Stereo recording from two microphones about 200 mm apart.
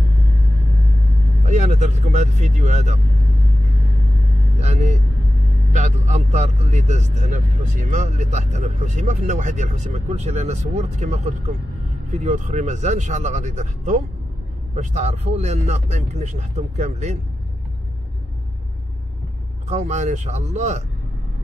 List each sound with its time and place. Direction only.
1.4 s speech: 35° right (ahead or behind)
4.6 s speech: 35° right (ahead or behind)
19.7 s speech: 35° right (ahead or behind)